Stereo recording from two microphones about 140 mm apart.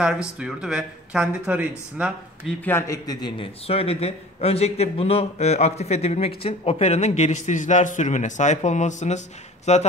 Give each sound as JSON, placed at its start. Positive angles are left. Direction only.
{"t": 0.0, "sound": "speech", "side_deg": -5}
{"t": 2.6, "sound": "a man's voice", "side_deg": 15}
{"t": 3.1, "sound": "a man's voice", "side_deg": 30}
{"t": 3.6, "sound": "a man's voice", "side_deg": 45}